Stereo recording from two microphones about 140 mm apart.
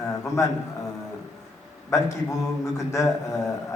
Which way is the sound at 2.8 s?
20° left (ahead or behind).